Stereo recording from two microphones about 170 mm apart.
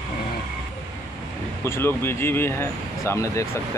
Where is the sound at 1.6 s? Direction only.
15° left (ahead or behind).